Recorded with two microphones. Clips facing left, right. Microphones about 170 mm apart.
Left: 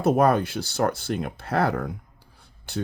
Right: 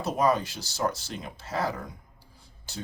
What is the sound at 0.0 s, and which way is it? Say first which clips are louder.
Speech: left 6 dB; 55° left (ahead or behind).